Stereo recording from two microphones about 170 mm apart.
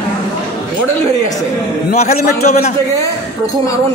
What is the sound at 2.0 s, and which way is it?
Speech, 40° left (ahead or behind).